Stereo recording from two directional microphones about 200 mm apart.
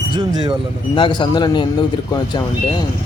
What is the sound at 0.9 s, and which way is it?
A man's voice, 25° left (ahead or behind).